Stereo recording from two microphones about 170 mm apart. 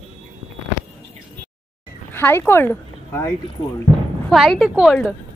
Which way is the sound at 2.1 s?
15° left (ahead or behind).